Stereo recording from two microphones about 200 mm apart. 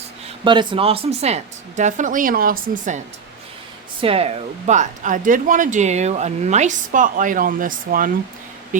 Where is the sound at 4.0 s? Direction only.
30° right (ahead or behind).